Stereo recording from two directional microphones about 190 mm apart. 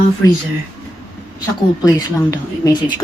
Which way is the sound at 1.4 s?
20° left (ahead or behind).